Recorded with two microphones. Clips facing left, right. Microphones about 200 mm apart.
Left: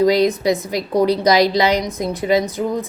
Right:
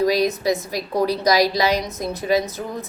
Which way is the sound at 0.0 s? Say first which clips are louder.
Left 4 dB; 20° left (ahead or behind).